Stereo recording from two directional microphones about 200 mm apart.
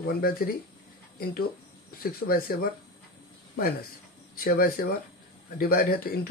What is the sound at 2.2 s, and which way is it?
Speech, 60° left (ahead or behind).